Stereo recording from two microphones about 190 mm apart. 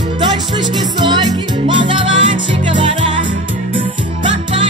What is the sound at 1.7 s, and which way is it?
Music, 25° right (ahead or behind).